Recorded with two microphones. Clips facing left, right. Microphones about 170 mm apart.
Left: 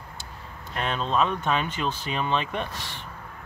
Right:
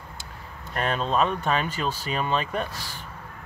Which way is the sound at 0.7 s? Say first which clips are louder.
Right 2 dB; 45° right (ahead or behind).